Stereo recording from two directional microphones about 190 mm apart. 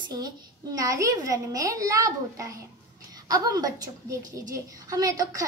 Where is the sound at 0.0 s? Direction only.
20° right (ahead or behind).